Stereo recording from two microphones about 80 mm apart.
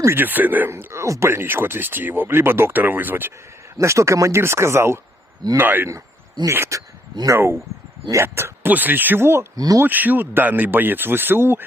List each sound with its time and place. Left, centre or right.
0.0 s speech: right
0.7 s speech: right
3.8 s speech: right
9.6 s speech: right
9.8 s speech: right